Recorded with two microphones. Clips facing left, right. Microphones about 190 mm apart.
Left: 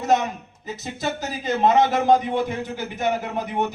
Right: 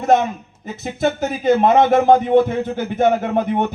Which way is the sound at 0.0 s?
55° right (ahead or behind).